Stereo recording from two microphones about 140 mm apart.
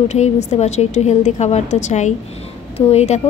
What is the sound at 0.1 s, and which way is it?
A woman's voice, 55° left (ahead or behind).